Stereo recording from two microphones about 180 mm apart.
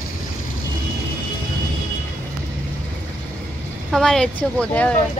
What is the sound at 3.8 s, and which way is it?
Speech, centre (ahead or behind).